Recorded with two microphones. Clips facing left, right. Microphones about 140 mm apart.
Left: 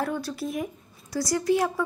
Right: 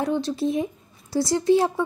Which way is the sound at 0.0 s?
25° right (ahead or behind).